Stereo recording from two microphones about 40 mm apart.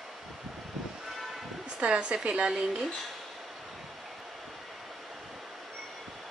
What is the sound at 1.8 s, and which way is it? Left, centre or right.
A woman's voice, right.